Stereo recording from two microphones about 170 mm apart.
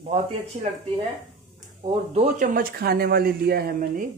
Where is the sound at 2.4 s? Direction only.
55° right (ahead or behind).